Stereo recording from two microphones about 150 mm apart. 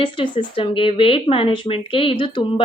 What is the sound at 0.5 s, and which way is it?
A woman's voice, 35° left (ahead or behind).